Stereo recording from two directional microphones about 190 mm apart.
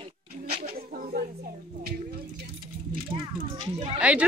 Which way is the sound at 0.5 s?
30° right (ahead or behind).